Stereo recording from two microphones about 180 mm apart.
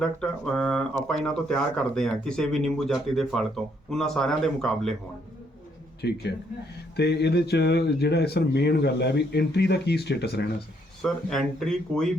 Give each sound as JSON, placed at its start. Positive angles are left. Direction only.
{"t": 0.0, "sound": "speech", "side_deg": 5}
{"t": 6.0, "sound": "speech", "side_deg": 70}
{"t": 11.0, "sound": "speech", "side_deg": 0}